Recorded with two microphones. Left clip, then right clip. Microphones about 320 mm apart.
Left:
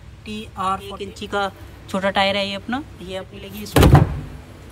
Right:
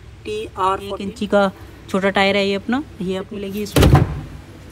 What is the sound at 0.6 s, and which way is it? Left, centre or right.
A man's voice, centre.